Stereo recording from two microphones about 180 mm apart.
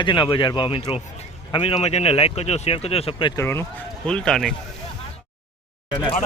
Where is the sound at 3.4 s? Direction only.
15° left (ahead or behind).